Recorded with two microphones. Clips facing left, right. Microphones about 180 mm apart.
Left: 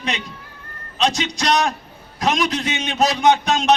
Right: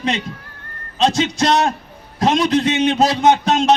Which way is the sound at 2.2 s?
30° right (ahead or behind).